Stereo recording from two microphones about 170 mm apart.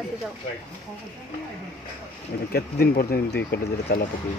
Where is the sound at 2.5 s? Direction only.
65° left (ahead or behind).